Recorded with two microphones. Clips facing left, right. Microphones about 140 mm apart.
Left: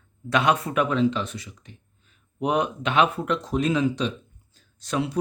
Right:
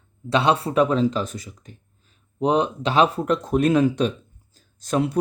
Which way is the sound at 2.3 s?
30° right (ahead or behind).